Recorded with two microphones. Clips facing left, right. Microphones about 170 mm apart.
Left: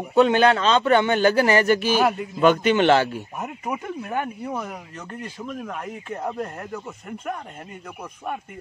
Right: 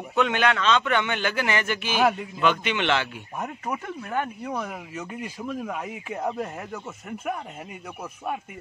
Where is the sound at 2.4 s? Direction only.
40° left (ahead or behind).